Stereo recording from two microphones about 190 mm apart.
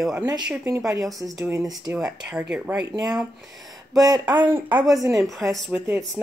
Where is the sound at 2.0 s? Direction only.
5° right (ahead or behind).